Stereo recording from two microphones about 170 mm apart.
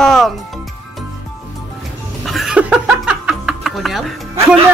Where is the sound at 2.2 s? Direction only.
Centre (ahead or behind).